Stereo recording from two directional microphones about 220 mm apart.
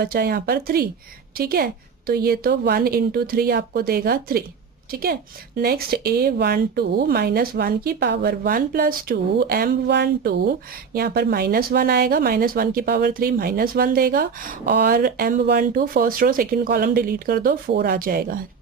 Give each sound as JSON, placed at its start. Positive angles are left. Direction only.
{"t": 0.0, "sound": "speech", "side_deg": -45}
{"t": 5.5, "sound": "speech", "side_deg": -45}